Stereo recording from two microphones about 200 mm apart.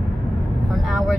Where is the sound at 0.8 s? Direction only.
Centre (ahead or behind).